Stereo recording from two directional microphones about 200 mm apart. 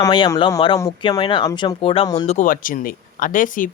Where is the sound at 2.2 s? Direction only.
35° left (ahead or behind).